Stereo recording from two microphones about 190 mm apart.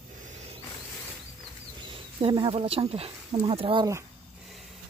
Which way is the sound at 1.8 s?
25° right (ahead or behind).